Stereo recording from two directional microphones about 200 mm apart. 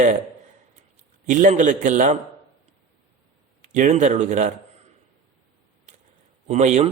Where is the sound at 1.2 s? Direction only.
40° right (ahead or behind).